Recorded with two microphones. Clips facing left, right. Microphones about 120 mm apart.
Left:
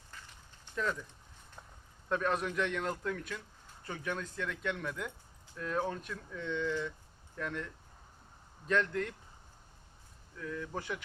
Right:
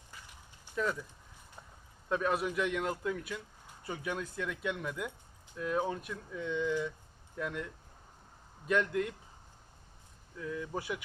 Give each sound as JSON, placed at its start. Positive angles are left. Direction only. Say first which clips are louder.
{"t": 0.6, "sound": "a sound", "louder": "right 2 dB", "side_deg": -10}
{"t": 2.0, "sound": "a man's voice", "louder": "right 1 dB", "side_deg": -5}
{"t": 10.3, "sound": "a man's voice", "louder": "right 2 dB", "side_deg": -10}